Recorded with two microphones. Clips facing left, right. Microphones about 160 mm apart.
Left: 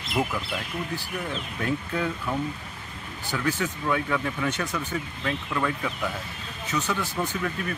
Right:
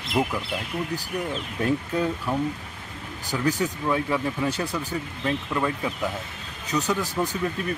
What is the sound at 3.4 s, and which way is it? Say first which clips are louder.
Speech: right 3 dB; 35° right (ahead or behind).